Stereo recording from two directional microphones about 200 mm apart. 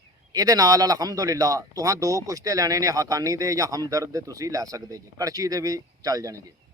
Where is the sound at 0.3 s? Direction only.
20° right (ahead or behind).